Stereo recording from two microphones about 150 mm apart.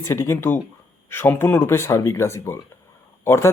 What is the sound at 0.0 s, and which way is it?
Speech, 20° left (ahead or behind).